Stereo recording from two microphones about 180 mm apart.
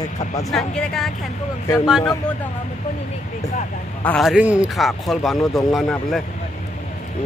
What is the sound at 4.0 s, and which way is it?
Speech, 10° left (ahead or behind).